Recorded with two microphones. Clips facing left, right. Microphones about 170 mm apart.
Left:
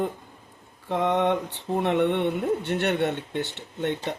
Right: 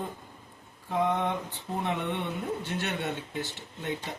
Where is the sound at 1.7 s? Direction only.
65° left (ahead or behind).